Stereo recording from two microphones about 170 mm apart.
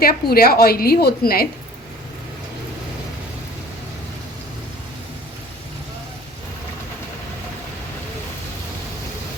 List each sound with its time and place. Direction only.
0.0 s a woman's voice: 60° left (ahead or behind)